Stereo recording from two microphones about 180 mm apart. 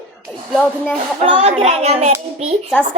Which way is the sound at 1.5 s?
35° right (ahead or behind).